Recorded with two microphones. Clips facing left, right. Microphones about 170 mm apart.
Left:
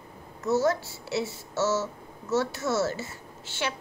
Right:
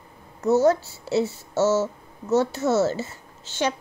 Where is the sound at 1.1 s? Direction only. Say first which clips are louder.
Right 7 dB; 25° right (ahead or behind).